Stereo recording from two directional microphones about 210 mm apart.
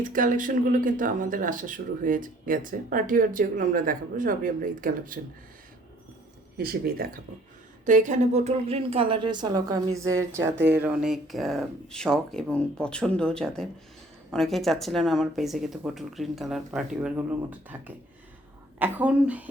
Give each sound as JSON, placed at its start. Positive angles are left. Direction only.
{"t": 0.0, "sound": "speech", "side_deg": -40}
{"t": 6.6, "sound": "a woman's voice", "side_deg": -45}